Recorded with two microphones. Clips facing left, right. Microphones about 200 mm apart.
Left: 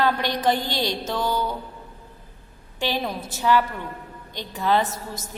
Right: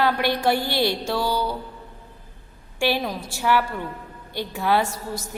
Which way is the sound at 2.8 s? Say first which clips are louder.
Right 3 dB; 10° right (ahead or behind).